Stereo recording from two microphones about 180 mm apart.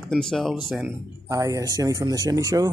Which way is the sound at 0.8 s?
20° right (ahead or behind).